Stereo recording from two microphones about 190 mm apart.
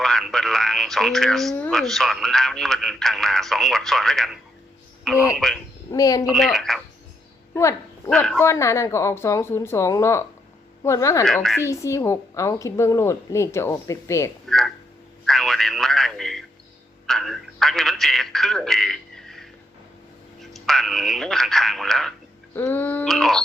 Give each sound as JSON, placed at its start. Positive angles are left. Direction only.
{"t": 0.0, "sound": "speech", "side_deg": 0}
{"t": 5.9, "sound": "a woman's voice", "side_deg": 20}
{"t": 6.2, "sound": "speech", "side_deg": 0}
{"t": 7.5, "sound": "dog", "side_deg": 15}
{"t": 8.1, "sound": "speech", "side_deg": 0}
{"t": 8.4, "sound": "a woman's voice", "side_deg": 15}
{"t": 11.3, "sound": "speech", "side_deg": 0}
{"t": 11.6, "sound": "a woman's voice", "side_deg": 15}
{"t": 14.4, "sound": "a sound", "side_deg": 0}
{"t": 15.3, "sound": "radio", "side_deg": 0}
{"t": 17.1, "sound": "telephone", "side_deg": 0}
{"t": 20.4, "sound": "a woman's voice", "side_deg": 0}